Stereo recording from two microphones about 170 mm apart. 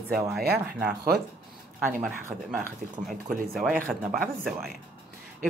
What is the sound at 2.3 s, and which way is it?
Speech, 45° right (ahead or behind).